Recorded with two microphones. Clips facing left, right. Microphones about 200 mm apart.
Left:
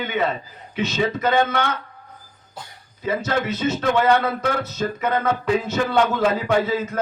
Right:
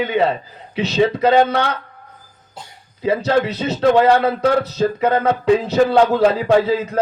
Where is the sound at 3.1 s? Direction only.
30° right (ahead or behind).